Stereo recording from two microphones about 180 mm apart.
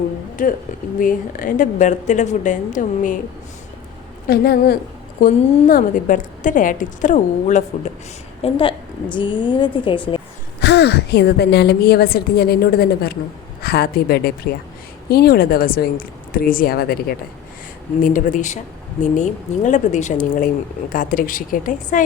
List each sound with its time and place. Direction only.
0.9 s speech: 50° left (ahead or behind)
4.3 s a woman's voice: 60° left (ahead or behind)
5.2 s speech: 45° left (ahead or behind)
8.4 s a woman's voice: 30° left (ahead or behind)
10.6 s a woman's voice: 65° left (ahead or behind)
18.0 s speech: 45° left (ahead or behind)